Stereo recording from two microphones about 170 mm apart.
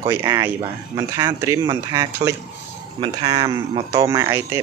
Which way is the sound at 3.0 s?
30° right (ahead or behind).